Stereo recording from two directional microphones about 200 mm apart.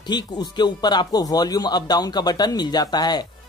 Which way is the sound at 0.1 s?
20° left (ahead or behind).